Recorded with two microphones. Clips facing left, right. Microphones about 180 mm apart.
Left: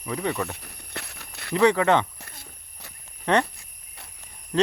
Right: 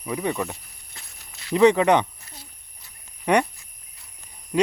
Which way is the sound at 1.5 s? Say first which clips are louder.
Right 3 dB; 20° right (ahead or behind).